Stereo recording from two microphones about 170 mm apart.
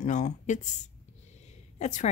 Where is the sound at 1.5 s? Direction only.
45° left (ahead or behind).